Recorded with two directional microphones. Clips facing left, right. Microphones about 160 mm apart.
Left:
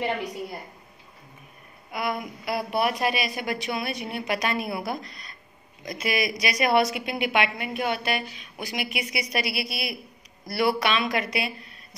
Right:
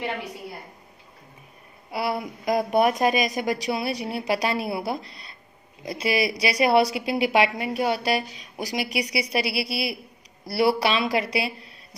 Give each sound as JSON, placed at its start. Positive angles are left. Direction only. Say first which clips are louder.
{"t": 1.9, "sound": "a woman's voice", "louder": "right 2 dB", "side_deg": -35}